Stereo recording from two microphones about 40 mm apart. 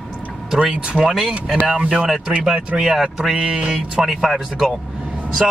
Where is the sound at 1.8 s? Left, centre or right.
Right.